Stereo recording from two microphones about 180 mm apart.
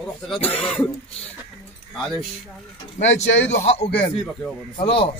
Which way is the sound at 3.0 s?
90° left.